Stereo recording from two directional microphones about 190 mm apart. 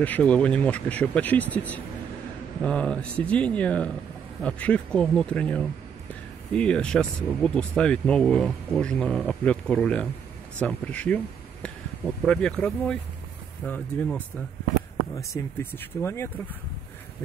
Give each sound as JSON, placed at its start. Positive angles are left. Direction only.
{"t": 0.0, "sound": "speech", "side_deg": 5}
{"t": 12.3, "sound": "speech", "side_deg": 5}